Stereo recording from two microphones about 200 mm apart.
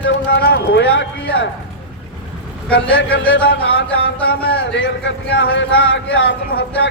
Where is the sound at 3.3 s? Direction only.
60° left (ahead or behind).